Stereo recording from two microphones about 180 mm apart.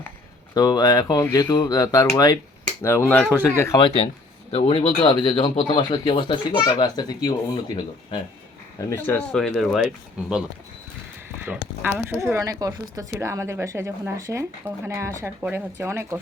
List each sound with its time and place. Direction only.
0.5 s a child's voice: 20° left (ahead or behind)
2.8 s speech: 10° left (ahead or behind)
3.7 s a child's voice: 25° left (ahead or behind)
8.9 s speech: 10° left (ahead or behind); by 10.3 s 5° right (ahead or behind)
11.8 s speech: 10° right (ahead or behind)